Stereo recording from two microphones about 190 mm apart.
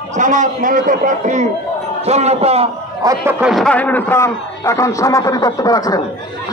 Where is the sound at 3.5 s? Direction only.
5° left (ahead or behind).